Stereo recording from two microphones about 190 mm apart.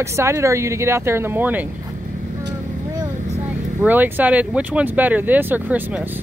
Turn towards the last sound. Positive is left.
turn(degrees=-10)  # may be behind; listen again after turning